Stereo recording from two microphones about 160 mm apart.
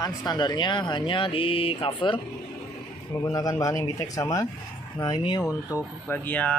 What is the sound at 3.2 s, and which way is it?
Speech, 20° left (ahead or behind).